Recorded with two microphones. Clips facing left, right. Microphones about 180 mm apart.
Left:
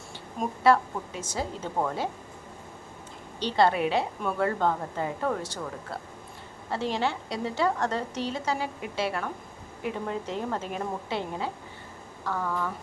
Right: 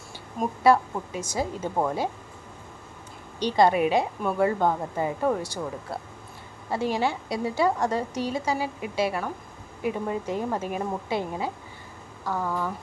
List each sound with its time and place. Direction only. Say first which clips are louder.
0.6 s a woman's voice: right 2 dB; 10° right (ahead or behind)
3.4 s a woman's voice: right 3 dB; 15° right (ahead or behind)